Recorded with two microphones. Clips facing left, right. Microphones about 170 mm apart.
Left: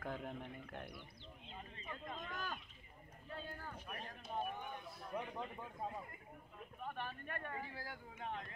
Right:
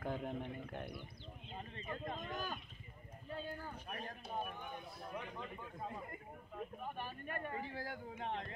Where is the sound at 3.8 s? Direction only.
40° right (ahead or behind).